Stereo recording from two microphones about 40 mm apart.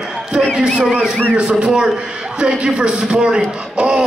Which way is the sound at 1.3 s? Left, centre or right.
Right.